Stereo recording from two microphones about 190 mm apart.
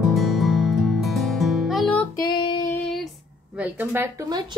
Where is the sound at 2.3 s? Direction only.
25° left (ahead or behind).